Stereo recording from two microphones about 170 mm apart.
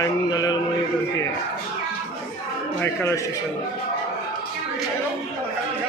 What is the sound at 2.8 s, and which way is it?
Speech, 15° left (ahead or behind).